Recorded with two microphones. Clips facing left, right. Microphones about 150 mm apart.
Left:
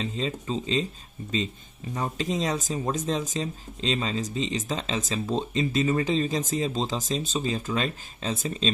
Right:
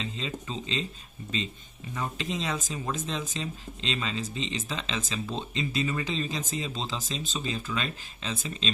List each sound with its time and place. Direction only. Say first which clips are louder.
0.0 s speech: left 5 dB; 40° left (ahead or behind)
2.0 s speech: left 4 dB; 40° left (ahead or behind)